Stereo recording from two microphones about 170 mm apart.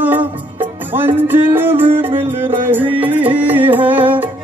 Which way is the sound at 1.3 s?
10° right (ahead or behind).